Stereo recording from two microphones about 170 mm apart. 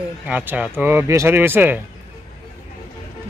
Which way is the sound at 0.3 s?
10° right (ahead or behind).